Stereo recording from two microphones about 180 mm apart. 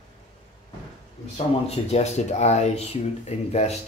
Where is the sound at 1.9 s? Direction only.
35° left (ahead or behind).